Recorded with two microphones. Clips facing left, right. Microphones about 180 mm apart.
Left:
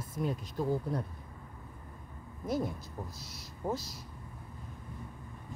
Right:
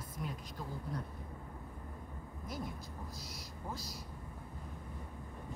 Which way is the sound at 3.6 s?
60° left (ahead or behind).